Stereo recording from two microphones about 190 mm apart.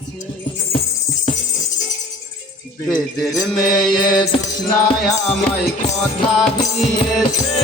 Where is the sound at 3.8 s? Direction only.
20° left (ahead or behind).